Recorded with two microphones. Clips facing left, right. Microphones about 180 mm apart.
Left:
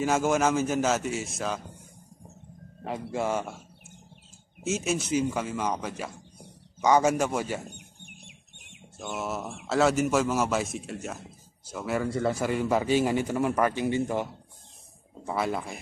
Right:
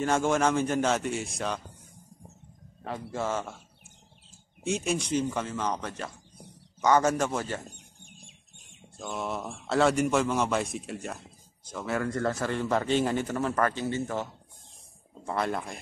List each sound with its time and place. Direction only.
0.0 s a man's voice: 5° left (ahead or behind)
2.8 s a man's voice: 15° left (ahead or behind)
4.6 s a man's voice: 5° left (ahead or behind)
7.7 s chicken: 65° left (ahead or behind)
9.0 s a man's voice: 5° left (ahead or behind)